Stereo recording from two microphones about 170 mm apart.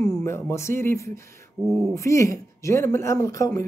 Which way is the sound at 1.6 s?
Centre (ahead or behind).